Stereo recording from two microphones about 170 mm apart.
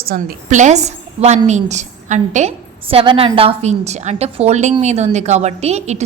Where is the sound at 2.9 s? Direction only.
35° right (ahead or behind).